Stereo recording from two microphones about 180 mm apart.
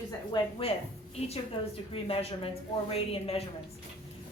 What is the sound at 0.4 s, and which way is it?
Speech, 25° left (ahead or behind).